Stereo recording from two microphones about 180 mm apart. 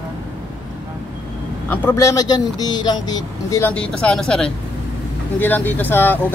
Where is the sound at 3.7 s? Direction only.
5° left (ahead or behind).